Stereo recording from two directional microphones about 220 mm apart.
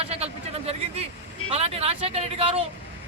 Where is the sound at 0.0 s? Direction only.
25° right (ahead or behind).